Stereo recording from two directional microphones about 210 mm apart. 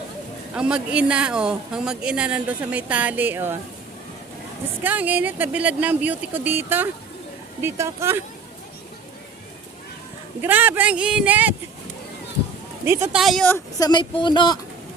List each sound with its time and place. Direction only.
0.5 s a woman's voice: 5° right (ahead or behind)
4.8 s speech: 10° right (ahead or behind)
10.4 s speech: 10° right (ahead or behind)
12.8 s a woman's voice: 10° right (ahead or behind)
13.7 s speech: 20° left (ahead or behind)